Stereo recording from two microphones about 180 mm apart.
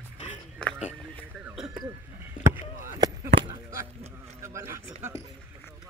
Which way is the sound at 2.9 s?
20° right (ahead or behind).